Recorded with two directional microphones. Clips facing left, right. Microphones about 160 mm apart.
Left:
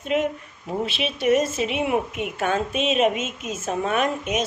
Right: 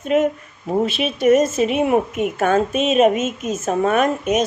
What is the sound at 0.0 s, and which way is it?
A woman's voice, 45° right (ahead or behind).